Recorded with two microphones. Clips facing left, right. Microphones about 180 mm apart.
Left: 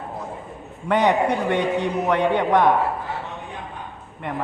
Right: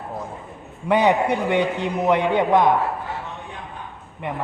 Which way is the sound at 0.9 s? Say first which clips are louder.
Right 1 dB; 10° right (ahead or behind).